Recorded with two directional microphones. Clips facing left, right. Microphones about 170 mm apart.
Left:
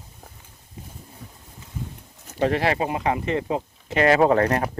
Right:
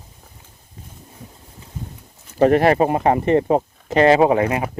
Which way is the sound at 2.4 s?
50° right (ahead or behind).